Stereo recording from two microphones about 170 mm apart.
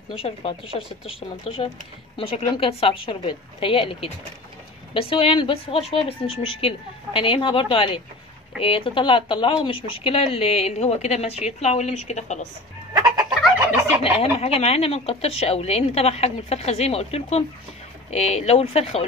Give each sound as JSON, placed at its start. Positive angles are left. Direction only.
{"t": 0.1, "sound": "a woman's voice", "side_deg": 35}
{"t": 14.1, "sound": "a woman's voice", "side_deg": 35}